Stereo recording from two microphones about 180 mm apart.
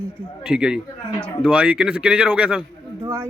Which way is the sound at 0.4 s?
5° right (ahead or behind).